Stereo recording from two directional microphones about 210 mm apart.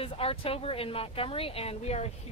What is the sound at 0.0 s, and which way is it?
Speech, 25° left (ahead or behind).